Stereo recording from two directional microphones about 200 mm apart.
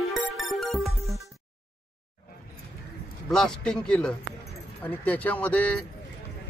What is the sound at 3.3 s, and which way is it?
Speech, 5° left (ahead or behind).